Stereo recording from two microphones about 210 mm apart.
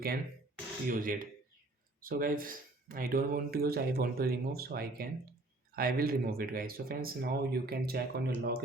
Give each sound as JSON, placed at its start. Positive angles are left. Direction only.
{"t": 0.9, "sound": "speech", "side_deg": -40}